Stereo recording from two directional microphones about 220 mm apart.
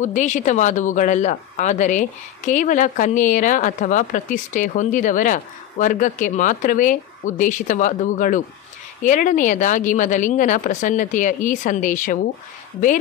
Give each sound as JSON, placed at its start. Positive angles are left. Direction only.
{"t": 0.0, "sound": "speech", "side_deg": 35}